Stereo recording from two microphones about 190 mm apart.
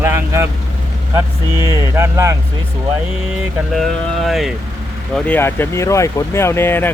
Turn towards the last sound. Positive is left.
turn(degrees=10)  # may be behind; listen again after turning